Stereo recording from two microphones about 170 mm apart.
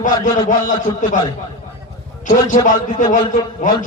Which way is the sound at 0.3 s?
50° left (ahead or behind).